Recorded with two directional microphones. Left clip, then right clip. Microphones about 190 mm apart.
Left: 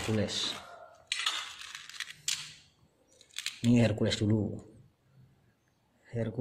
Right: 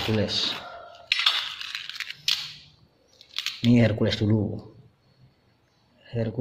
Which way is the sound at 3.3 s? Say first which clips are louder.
Right 6 dB; centre (ahead or behind).